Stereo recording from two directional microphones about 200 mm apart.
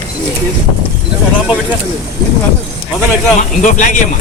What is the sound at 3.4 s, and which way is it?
Speech, 40° left (ahead or behind).